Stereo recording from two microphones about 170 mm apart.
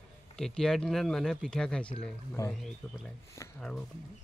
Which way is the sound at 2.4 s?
20° left (ahead or behind).